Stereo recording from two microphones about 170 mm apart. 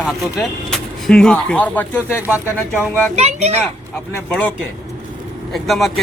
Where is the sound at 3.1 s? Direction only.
40° right (ahead or behind).